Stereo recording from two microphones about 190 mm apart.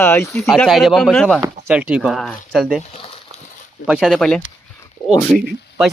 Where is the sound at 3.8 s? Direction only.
5° right (ahead or behind).